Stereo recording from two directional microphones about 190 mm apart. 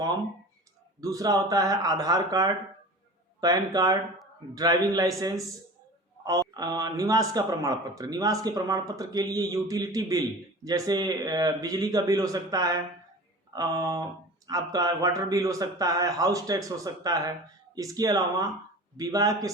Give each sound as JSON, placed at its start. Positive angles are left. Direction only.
{"t": 1.0, "sound": "a man's voice", "side_deg": -20}